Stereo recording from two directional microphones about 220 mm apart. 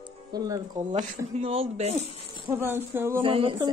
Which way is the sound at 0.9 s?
30° right (ahead or behind).